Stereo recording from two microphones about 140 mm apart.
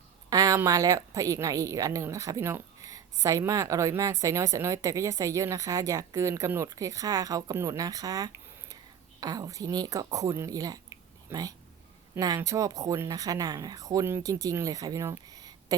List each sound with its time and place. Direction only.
0.3 s a woman's voice: 25° right (ahead or behind)